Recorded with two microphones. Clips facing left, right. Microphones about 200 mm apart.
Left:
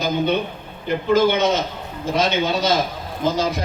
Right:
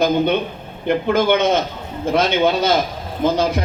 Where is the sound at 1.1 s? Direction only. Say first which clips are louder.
Even; 60° right (ahead or behind).